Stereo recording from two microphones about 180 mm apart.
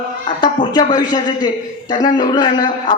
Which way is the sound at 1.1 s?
25° left (ahead or behind).